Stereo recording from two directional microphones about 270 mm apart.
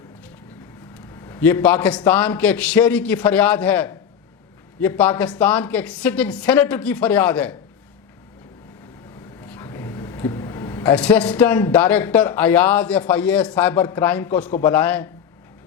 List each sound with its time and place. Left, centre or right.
1.1 s a man's voice: centre
9.4 s speech: centre